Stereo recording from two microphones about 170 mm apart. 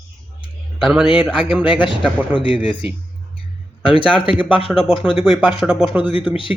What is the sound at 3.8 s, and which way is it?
Speech, 30° left (ahead or behind).